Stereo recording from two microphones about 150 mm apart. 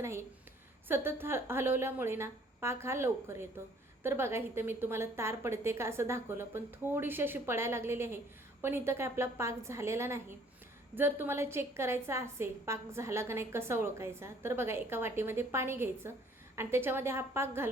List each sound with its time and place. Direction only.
0.0 s a woman's voice: 20° right (ahead or behind)